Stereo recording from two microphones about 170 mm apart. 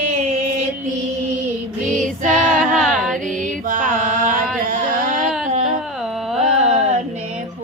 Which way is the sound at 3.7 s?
50° right (ahead or behind).